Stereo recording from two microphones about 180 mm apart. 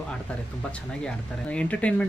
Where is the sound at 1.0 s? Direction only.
5° left (ahead or behind).